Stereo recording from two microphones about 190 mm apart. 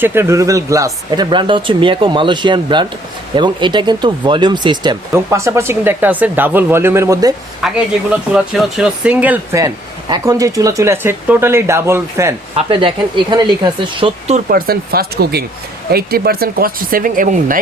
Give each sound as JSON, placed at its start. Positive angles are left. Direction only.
{"t": 0.0, "sound": "speech", "side_deg": -10}
{"t": 7.6, "sound": "speech", "side_deg": 0}
{"t": 12.5, "sound": "speech", "side_deg": -25}
{"t": 14.5, "sound": "speech", "side_deg": -55}